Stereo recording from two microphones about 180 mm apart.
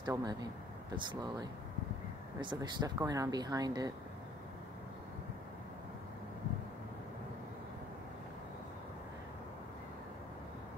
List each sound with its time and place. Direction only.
0.0 s speech: 20° right (ahead or behind)